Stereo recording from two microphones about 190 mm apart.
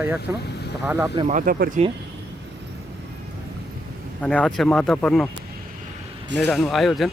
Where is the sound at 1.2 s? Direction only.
45° right (ahead or behind).